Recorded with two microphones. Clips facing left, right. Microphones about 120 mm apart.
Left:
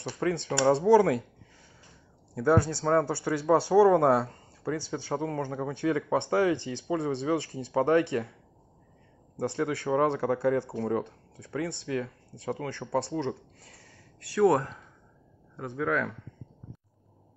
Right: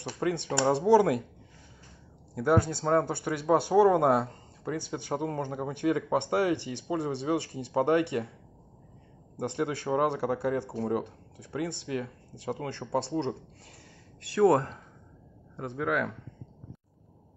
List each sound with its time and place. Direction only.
0.0 s speech: 15° right (ahead or behind)
2.3 s speech: 20° right (ahead or behind)
9.4 s speech: 20° right (ahead or behind)